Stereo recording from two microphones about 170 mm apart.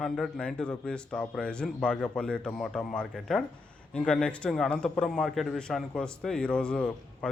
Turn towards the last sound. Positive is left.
turn(degrees=5)  # may be behind; listen again after turning